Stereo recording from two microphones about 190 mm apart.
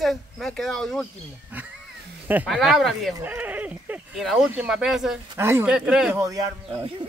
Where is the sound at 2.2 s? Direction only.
10° right (ahead or behind).